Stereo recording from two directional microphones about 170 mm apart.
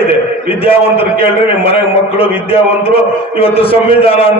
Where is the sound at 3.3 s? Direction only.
35° left (ahead or behind).